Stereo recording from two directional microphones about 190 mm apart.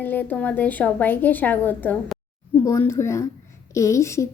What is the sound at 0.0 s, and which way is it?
Speech, 10° left (ahead or behind).